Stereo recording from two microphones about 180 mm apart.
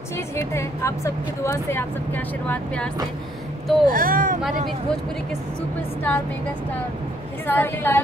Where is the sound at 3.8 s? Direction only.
50° right (ahead or behind).